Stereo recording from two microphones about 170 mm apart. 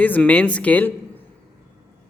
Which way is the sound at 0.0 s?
10° left (ahead or behind).